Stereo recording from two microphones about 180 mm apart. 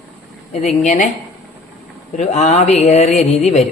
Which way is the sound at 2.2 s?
40° left (ahead or behind).